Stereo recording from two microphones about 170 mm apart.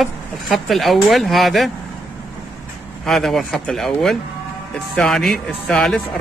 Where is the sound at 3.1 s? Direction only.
Centre (ahead or behind).